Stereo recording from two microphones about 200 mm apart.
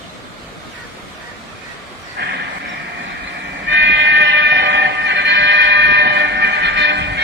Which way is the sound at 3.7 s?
60° right (ahead or behind).